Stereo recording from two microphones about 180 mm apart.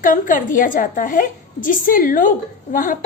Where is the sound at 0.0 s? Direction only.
50° left (ahead or behind).